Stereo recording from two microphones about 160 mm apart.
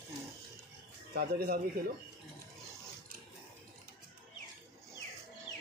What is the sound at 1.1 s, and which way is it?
Speech, 75° right (ahead or behind).